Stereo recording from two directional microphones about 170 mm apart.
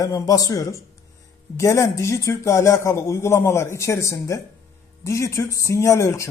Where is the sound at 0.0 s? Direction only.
20° left (ahead or behind).